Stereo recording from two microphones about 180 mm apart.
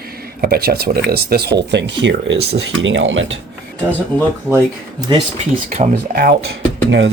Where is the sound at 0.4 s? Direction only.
60° right (ahead or behind); by 3.3 s 90° right.